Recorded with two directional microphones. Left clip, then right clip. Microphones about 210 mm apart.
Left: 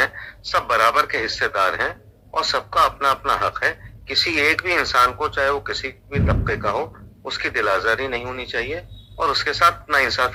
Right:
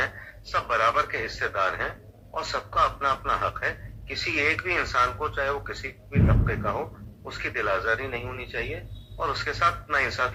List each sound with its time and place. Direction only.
0.0 s a man's voice: 35° left (ahead or behind)